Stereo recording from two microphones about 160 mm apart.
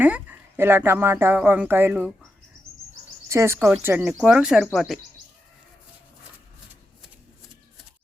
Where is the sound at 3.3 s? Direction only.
15° right (ahead or behind).